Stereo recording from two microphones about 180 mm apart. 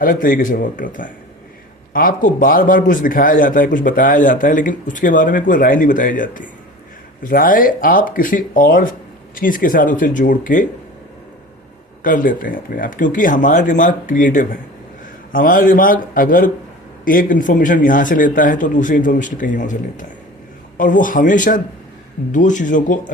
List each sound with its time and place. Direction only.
0.0 s a man's voice: 50° left (ahead or behind)
12.0 s a man's voice: 50° left (ahead or behind)